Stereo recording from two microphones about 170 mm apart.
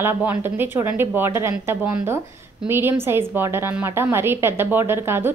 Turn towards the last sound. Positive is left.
turn(degrees=-15)  # may be behind; listen again after turning